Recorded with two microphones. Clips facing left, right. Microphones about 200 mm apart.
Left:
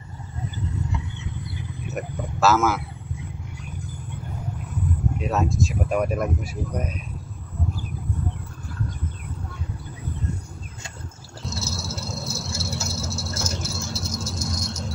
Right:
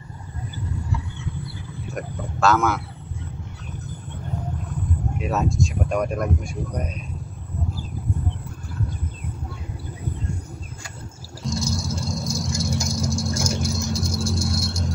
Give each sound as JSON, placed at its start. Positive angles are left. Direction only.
{"t": 0.8, "sound": "a sound", "side_deg": 20}
{"t": 2.0, "sound": "speech", "side_deg": 5}
{"t": 5.2, "sound": "speech", "side_deg": 0}
{"t": 11.4, "sound": "cat", "side_deg": -15}